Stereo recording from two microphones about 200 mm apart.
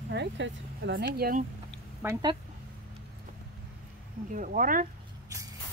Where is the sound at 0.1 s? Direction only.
60° right (ahead or behind).